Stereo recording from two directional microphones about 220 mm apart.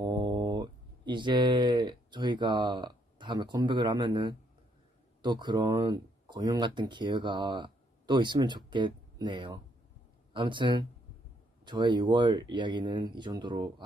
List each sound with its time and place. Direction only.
0.0 s speech: 15° right (ahead or behind)